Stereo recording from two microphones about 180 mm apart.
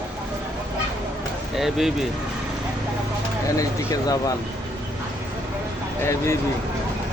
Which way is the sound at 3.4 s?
20° left (ahead or behind).